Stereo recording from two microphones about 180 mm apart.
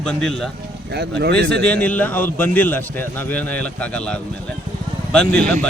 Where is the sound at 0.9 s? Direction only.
65° right (ahead or behind).